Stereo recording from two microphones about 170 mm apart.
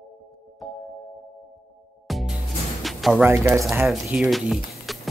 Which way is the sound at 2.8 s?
Centre (ahead or behind).